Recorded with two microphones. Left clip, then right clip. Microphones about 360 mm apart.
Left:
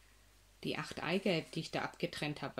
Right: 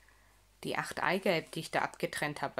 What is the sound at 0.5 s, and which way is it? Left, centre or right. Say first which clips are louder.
Speech: right 6 dB; centre.